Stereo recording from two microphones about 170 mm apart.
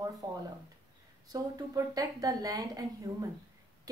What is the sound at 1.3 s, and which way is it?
A woman's voice, 20° right (ahead or behind).